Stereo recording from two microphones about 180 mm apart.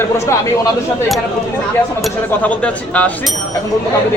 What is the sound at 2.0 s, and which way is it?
Speech, 5° left (ahead or behind).